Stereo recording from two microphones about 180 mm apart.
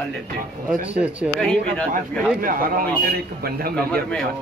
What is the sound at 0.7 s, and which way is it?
Speech, 5° right (ahead or behind).